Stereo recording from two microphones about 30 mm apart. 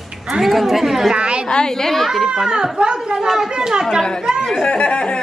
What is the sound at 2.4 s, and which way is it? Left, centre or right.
Speech, right.